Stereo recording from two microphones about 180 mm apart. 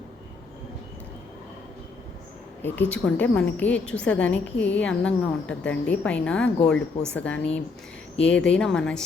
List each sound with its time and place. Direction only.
2.6 s a woman's voice: 10° left (ahead or behind)